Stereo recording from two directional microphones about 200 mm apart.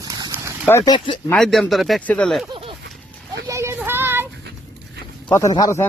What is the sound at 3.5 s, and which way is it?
Child singing, 15° right (ahead or behind).